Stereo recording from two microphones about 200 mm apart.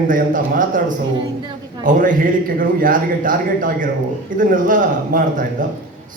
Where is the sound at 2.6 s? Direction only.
45° right (ahead or behind).